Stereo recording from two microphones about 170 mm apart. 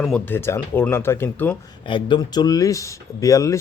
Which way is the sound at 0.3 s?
15° left (ahead or behind).